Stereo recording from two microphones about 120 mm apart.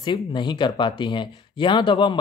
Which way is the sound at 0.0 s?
40° left (ahead or behind).